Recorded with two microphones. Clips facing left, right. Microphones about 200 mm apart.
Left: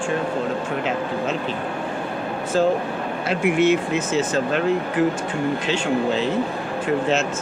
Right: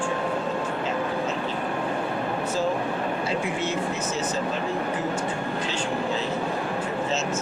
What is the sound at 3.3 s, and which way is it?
Speech, 75° left (ahead or behind).